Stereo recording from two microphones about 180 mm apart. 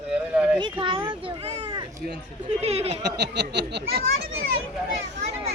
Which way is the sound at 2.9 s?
70° right (ahead or behind).